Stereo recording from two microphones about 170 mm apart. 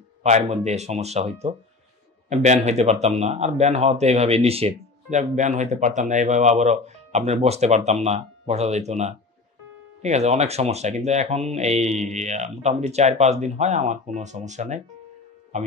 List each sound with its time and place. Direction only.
0.2 s a man's voice: 40° right (ahead or behind)